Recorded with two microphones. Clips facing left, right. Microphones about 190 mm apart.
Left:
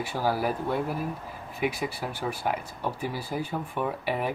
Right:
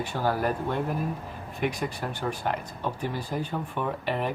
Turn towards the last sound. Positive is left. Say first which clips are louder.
# even
turn(degrees=10)  # may be behind; listen again after turning